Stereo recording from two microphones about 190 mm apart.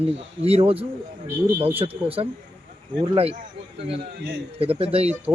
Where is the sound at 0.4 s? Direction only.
30° right (ahead or behind).